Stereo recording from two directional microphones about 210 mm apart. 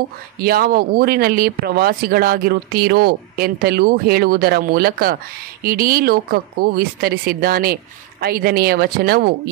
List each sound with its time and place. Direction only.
0.4 s speech: 45° right (ahead or behind)